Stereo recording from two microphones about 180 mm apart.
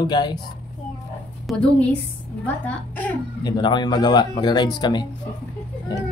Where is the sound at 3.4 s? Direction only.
25° left (ahead or behind).